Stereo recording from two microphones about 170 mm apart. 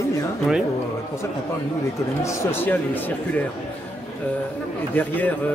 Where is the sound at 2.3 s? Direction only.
10° left (ahead or behind).